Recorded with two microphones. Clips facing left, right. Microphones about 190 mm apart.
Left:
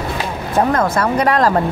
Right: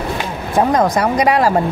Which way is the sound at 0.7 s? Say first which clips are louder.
Right 2 dB; 15° right (ahead or behind).